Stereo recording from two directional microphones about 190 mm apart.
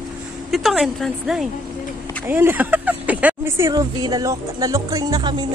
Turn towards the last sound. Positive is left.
turn(degrees=-20)  # may be behind; listen again after turning